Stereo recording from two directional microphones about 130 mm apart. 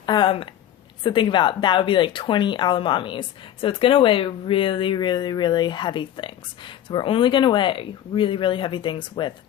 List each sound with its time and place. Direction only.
0.0 s speech: 35° left (ahead or behind)